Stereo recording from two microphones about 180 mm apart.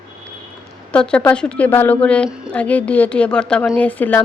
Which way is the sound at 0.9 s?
5° left (ahead or behind).